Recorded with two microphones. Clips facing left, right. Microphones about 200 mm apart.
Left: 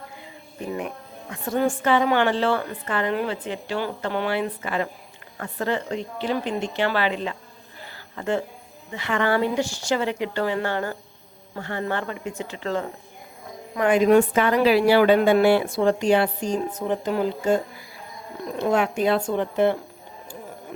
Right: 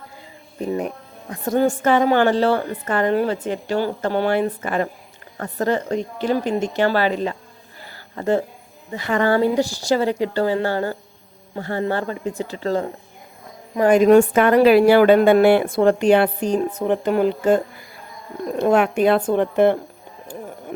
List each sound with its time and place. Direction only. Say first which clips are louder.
0.7 s a woman's voice: right 5 dB; 35° right (ahead or behind)
7.9 s a sound: right 5 dB; 40° right (ahead or behind)
8.9 s a woman's voice: right 4 dB; 40° right (ahead or behind); by 19.7 s 55° right (ahead or behind)